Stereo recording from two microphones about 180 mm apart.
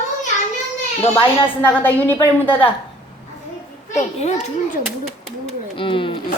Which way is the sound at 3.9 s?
40° left (ahead or behind).